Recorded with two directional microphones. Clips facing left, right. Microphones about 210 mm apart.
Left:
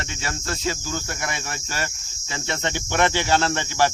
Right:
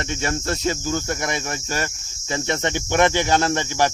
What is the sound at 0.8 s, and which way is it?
Cricket, 45° right (ahead or behind).